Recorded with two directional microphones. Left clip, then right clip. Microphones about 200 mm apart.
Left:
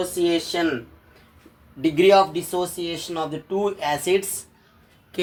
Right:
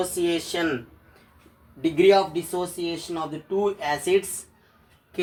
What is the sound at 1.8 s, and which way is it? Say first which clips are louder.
Speech: left 3 dB; 50° left (ahead or behind).